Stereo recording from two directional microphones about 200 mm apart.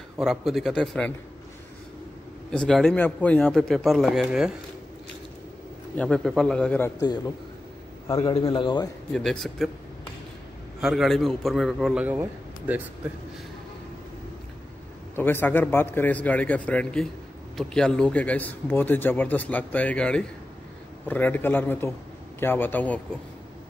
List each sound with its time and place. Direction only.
0.2 s speech: centre (ahead or behind)
2.5 s speech: 5° left (ahead or behind)
5.9 s speech: 5° left (ahead or behind)
8.2 s a man's voice: 25° left (ahead or behind)
9.1 s speech: centre (ahead or behind)
10.8 s speech: centre (ahead or behind)
15.1 s a man's voice: 10° left (ahead or behind)